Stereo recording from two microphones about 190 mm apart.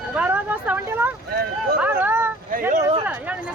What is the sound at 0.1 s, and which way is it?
Vehicle, 10° right (ahead or behind).